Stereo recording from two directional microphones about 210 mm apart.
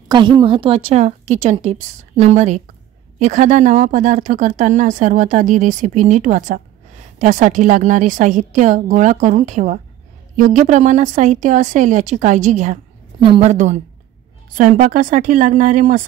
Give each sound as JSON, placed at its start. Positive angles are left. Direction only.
{"t": 0.1, "sound": "speech", "side_deg": -20}